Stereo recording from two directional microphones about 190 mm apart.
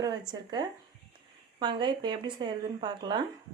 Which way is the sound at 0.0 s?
20° right (ahead or behind).